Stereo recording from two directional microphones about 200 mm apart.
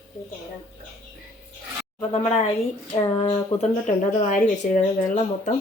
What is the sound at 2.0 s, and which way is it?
A woman's voice, 35° left (ahead or behind).